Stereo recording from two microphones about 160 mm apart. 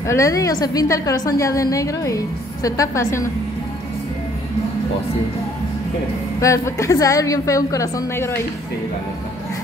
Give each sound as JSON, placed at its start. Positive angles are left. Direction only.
{"t": 0.0, "sound": "a woman's voice", "side_deg": 20}
{"t": 6.4, "sound": "a woman's voice", "side_deg": 20}